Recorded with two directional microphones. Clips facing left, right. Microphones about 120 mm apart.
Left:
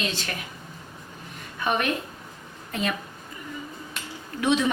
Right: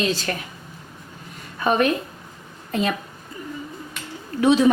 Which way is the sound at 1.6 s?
35° right (ahead or behind).